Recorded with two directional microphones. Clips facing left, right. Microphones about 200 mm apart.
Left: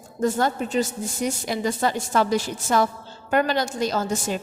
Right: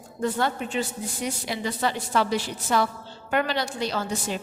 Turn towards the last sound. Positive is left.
turn(degrees=45)  # may be behind; listen again after turning